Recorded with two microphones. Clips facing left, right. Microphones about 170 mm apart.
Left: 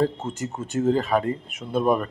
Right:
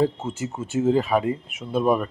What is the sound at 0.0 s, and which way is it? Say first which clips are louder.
Speech: right 1 dB; 5° right (ahead or behind).